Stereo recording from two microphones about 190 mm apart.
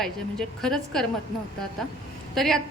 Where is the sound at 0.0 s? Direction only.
Centre (ahead or behind).